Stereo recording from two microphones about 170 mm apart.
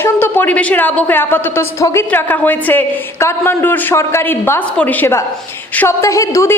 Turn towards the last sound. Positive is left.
turn(degrees=20)  # may be behind; listen again after turning